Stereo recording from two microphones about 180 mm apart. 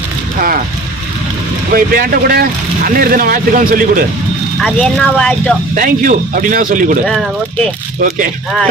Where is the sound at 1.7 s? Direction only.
55° right (ahead or behind).